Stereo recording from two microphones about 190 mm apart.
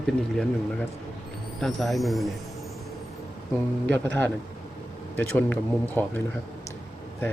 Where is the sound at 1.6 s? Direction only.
Centre (ahead or behind).